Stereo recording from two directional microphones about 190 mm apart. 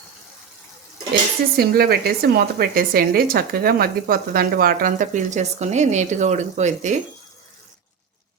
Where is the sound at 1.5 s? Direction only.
55° right (ahead or behind).